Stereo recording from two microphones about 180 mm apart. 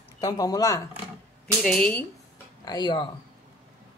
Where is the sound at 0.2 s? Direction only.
20° left (ahead or behind).